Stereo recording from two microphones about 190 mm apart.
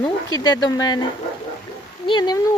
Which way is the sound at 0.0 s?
20° left (ahead or behind).